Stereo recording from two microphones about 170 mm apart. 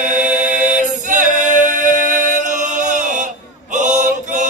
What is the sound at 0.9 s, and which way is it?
A capella, 50° right (ahead or behind).